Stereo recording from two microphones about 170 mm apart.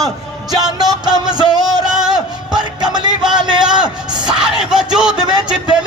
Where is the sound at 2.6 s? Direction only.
25° right (ahead or behind).